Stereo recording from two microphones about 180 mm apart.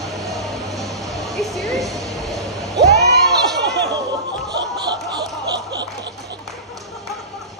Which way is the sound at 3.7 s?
70° right (ahead or behind).